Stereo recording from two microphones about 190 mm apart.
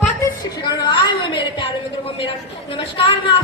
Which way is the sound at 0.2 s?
25° left (ahead or behind).